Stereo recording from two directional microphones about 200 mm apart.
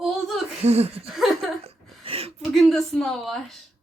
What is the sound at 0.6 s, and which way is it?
Speech, 30° right (ahead or behind).